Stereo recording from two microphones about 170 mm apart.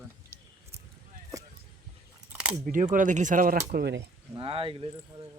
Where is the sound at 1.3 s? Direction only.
20° right (ahead or behind).